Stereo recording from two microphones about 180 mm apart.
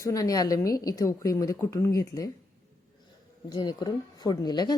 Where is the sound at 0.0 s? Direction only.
20° left (ahead or behind).